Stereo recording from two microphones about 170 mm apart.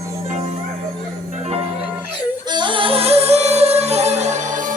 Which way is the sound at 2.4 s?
25° right (ahead or behind).